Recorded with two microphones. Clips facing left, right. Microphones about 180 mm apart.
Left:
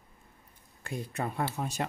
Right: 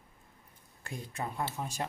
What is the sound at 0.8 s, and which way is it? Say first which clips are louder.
Speech: left 4 dB; 65° left (ahead or behind).